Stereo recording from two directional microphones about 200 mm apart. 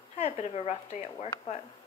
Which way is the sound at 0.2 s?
30° left (ahead or behind).